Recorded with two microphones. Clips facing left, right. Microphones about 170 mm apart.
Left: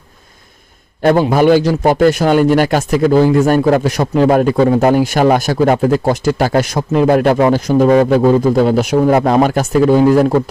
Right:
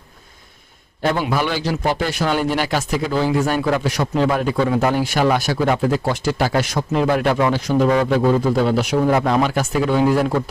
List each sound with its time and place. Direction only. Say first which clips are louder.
1.2 s speech: left 11 dB; 45° left (ahead or behind)